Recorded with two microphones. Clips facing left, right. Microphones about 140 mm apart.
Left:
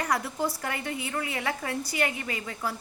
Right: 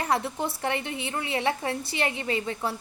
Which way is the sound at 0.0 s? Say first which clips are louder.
Right 1 dB; 25° right (ahead or behind).